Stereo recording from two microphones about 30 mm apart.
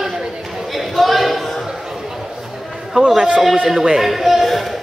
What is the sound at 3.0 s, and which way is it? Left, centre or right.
Speech, right.